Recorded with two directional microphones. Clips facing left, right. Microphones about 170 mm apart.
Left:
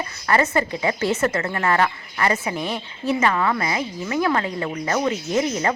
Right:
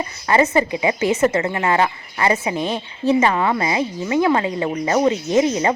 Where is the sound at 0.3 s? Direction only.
20° right (ahead or behind).